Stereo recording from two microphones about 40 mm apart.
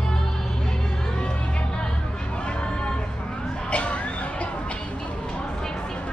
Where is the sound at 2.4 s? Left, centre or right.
Left.